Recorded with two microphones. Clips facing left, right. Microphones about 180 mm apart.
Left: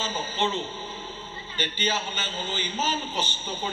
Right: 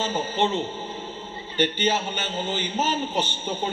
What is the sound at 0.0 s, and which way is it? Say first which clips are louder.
A man's voice: right 4 dB; 60° right (ahead or behind).